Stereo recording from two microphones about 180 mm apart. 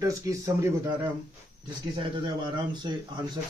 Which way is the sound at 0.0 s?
15° right (ahead or behind).